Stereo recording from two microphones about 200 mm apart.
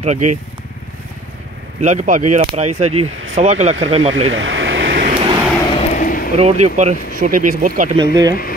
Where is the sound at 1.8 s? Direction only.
40° right (ahead or behind).